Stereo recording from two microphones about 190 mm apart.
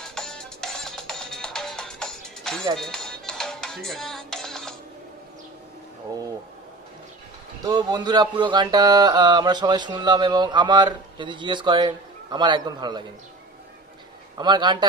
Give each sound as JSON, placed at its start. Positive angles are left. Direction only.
{"t": 0.0, "sound": "music", "side_deg": 5}
{"t": 7.6, "sound": "speech", "side_deg": -20}
{"t": 14.3, "sound": "speech", "side_deg": -25}